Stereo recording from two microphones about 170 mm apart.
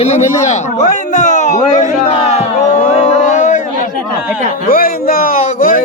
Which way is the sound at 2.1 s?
40° left (ahead or behind).